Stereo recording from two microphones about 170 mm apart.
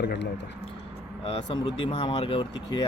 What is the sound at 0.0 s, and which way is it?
Speech, 70° left (ahead or behind).